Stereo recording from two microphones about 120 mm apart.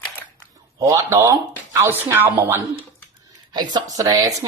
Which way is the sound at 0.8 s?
25° right (ahead or behind).